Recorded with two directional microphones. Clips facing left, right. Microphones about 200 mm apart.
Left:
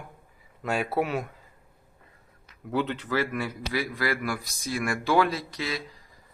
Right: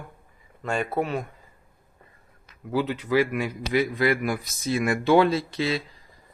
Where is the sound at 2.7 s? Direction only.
5° right (ahead or behind); by 5.8 s 25° right (ahead or behind).